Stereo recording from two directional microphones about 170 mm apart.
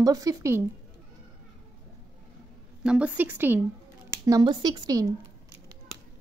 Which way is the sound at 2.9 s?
5° right (ahead or behind).